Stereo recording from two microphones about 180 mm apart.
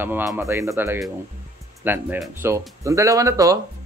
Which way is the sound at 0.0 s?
10° right (ahead or behind).